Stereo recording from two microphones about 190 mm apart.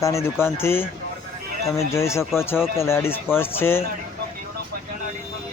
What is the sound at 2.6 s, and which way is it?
A man's voice, 15° left (ahead or behind).